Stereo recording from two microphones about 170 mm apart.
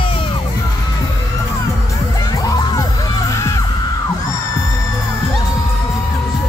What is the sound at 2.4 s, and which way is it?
Music, 20° left (ahead or behind).